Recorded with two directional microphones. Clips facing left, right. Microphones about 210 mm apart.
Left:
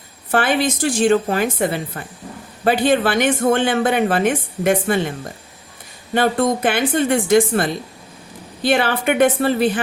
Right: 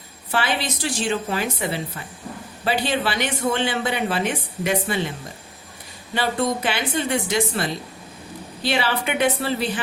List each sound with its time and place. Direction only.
0.3 s speech: 50° left (ahead or behind)
6.1 s speech: 50° left (ahead or behind)